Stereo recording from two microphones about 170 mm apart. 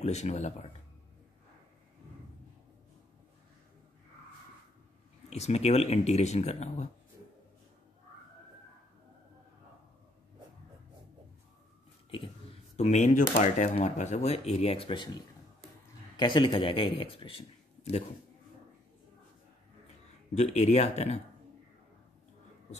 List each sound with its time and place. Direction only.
0.0 s speech: 40° left (ahead or behind)
5.3 s speech: 40° left (ahead or behind)
12.7 s speech: 40° left (ahead or behind)
16.2 s speech: 30° left (ahead or behind)
20.3 s speech: 40° left (ahead or behind)